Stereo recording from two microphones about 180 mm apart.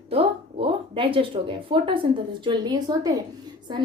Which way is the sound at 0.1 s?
30° right (ahead or behind).